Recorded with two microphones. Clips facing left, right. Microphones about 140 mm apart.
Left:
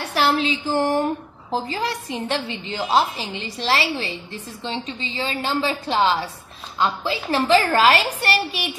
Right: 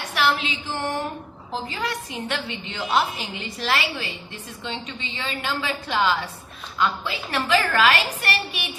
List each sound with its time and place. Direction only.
0.1 s a woman's voice: 35° left (ahead or behind)